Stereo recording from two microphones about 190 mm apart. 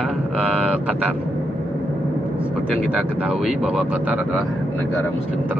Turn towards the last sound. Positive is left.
turn(degrees=0)  # may be behind; listen again after turning